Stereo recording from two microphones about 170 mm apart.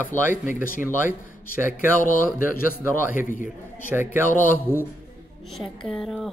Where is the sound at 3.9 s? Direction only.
15° right (ahead or behind).